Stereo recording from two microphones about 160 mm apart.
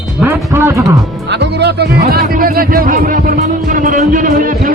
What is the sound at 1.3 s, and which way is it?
Music, 90° right.